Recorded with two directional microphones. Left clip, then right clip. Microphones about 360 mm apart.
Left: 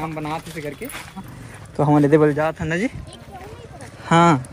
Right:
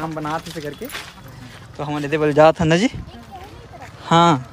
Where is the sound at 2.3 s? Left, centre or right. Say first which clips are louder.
Right 9 dB; centre.